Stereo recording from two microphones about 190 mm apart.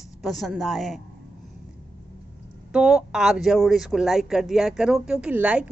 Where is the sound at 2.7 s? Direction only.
5° right (ahead or behind).